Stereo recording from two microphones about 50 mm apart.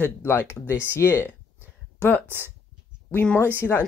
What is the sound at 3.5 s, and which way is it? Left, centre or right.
Speech, left.